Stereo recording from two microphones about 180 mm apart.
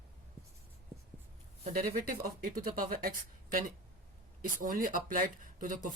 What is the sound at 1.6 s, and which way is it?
Speech, 50° right (ahead or behind).